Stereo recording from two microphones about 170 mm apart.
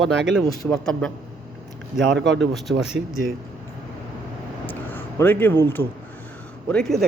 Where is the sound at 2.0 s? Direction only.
90° right.